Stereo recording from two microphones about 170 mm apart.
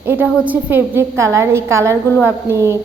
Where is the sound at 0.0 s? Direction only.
15° right (ahead or behind).